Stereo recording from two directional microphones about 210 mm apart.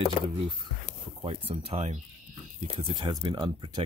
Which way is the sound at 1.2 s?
25° right (ahead or behind).